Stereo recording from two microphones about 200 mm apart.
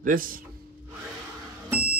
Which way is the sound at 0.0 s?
45° right (ahead or behind).